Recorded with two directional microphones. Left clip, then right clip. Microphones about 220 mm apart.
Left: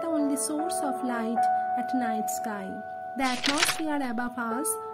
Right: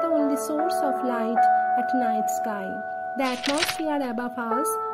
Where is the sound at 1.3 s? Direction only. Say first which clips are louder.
Right 6 dB; 25° right (ahead or behind).